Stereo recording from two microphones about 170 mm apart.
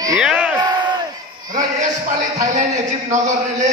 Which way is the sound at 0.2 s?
5° right (ahead or behind).